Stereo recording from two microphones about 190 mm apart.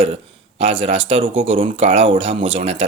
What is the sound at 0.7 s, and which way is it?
A man's voice, 30° right (ahead or behind).